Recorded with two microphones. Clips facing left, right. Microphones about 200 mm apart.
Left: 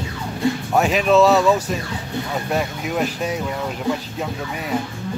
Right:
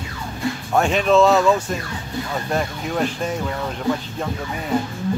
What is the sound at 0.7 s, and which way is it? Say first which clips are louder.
Speech: even; 5° left (ahead or behind).